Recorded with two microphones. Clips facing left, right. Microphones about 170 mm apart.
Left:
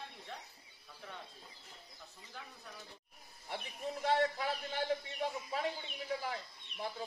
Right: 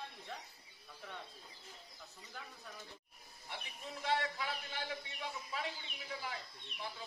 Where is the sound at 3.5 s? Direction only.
45° left (ahead or behind).